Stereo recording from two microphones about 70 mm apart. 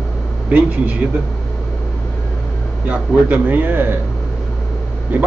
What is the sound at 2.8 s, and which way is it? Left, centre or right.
Speech, right.